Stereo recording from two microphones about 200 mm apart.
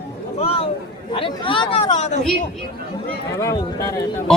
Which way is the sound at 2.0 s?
35° left (ahead or behind).